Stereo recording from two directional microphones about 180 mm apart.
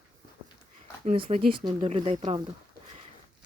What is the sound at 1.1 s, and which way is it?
Speech, 30° right (ahead or behind).